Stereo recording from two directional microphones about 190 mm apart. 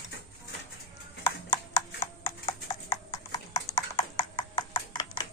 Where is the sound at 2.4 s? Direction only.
30° left (ahead or behind).